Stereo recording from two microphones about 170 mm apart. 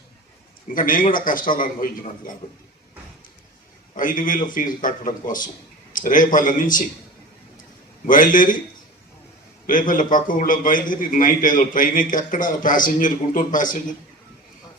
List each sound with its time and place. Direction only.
0.7 s a man's voice: 55° left (ahead or behind)
3.9 s a man's voice: 50° left (ahead or behind)
8.0 s a man's voice: 50° left (ahead or behind)
9.6 s a man's voice: 50° left (ahead or behind)